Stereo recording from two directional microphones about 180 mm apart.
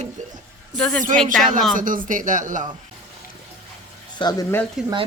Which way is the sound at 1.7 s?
50° right (ahead or behind).